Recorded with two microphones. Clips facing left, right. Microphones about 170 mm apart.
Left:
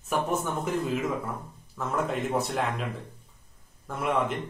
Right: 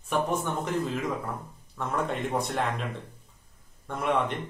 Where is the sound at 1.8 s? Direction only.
Centre (ahead or behind).